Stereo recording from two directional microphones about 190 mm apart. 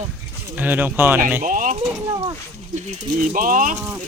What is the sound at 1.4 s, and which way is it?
Speech, 45° right (ahead or behind).